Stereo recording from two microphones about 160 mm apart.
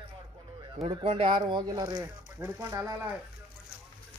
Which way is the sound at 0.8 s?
35° right (ahead or behind).